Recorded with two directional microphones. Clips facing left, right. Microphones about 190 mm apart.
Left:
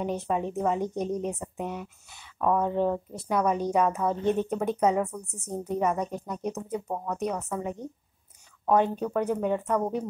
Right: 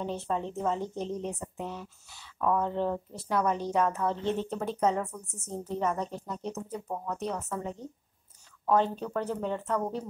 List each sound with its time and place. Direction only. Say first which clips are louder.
0.0 s a woman's voice: left 4 dB; 15° left (ahead or behind)